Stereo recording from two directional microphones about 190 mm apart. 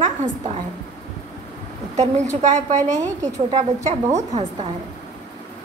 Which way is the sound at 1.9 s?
35° right (ahead or behind).